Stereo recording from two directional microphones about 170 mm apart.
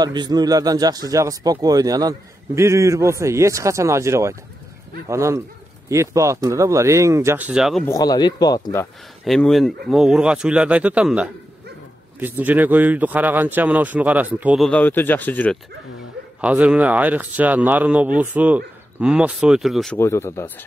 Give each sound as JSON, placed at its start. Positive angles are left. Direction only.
{"t": 0.0, "sound": "speech", "side_deg": -25}
{"t": 7.8, "sound": "speech", "side_deg": 20}
{"t": 9.2, "sound": "speech", "side_deg": 0}
{"t": 14.6, "sound": "speech", "side_deg": 10}
{"t": 16.3, "sound": "speech", "side_deg": -10}
{"t": 20.0, "sound": "speech", "side_deg": 15}